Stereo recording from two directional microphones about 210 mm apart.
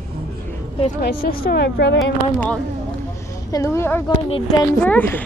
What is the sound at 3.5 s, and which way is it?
Speech, 15° left (ahead or behind).